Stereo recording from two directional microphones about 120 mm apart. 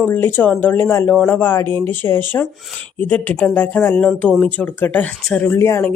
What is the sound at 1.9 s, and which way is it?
A man's voice, 20° left (ahead or behind).